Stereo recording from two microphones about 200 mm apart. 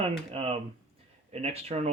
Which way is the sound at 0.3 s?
30° right (ahead or behind).